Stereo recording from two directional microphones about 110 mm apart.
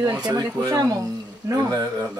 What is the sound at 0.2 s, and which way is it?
Speech, 35° right (ahead or behind).